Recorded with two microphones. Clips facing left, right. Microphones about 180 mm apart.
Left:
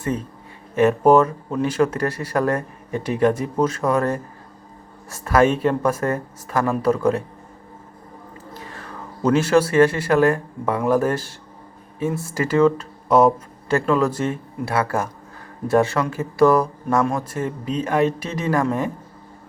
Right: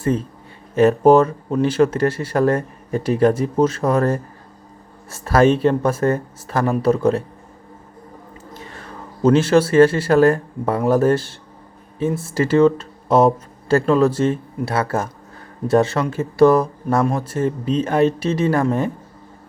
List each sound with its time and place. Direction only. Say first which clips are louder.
0.8 s speech: right 2 dB; 30° right (ahead or behind)
8.5 s speech: even; 25° right (ahead or behind)